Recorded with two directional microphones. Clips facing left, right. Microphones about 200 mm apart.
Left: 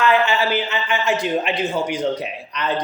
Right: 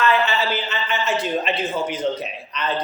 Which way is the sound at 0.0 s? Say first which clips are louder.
Left 2 dB; 15° left (ahead or behind).